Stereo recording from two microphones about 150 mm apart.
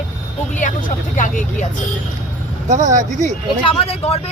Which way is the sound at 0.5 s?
60° left (ahead or behind).